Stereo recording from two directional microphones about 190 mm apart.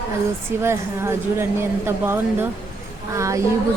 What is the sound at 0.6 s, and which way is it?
Speech, 15° right (ahead or behind).